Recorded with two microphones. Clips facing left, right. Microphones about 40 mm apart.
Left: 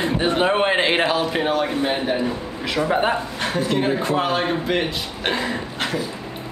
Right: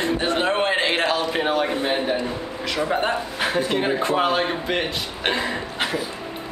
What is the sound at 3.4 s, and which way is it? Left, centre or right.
Speech, centre.